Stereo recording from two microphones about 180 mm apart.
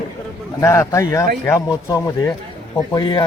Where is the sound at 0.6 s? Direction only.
15° left (ahead or behind).